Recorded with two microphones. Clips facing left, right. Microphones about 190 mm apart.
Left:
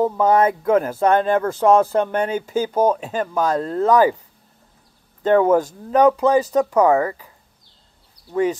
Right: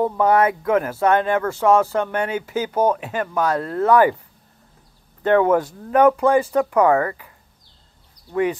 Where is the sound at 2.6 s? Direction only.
10° left (ahead or behind).